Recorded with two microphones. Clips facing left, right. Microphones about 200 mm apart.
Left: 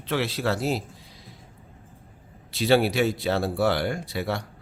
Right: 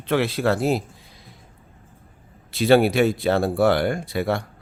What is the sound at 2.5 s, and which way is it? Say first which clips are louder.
Speech: right 5 dB; 55° right (ahead or behind).